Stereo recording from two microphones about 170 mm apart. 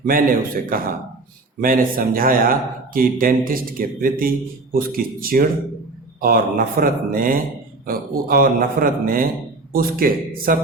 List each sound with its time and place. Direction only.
0.0 s speech: 55° right (ahead or behind)